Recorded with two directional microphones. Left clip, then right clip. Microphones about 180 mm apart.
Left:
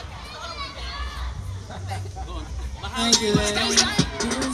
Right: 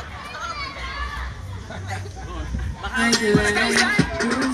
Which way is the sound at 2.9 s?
50° left (ahead or behind).